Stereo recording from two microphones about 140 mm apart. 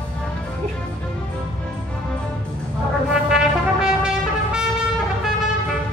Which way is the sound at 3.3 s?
5° right (ahead or behind).